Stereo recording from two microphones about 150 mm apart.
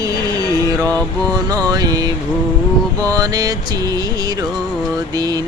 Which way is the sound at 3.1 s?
25° right (ahead or behind).